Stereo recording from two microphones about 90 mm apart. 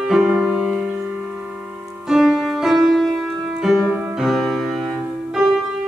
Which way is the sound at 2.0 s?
Centre (ahead or behind).